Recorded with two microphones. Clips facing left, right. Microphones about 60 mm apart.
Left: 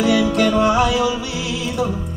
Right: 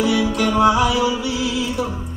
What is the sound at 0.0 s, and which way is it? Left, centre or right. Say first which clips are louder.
Music: left 2 dB; left.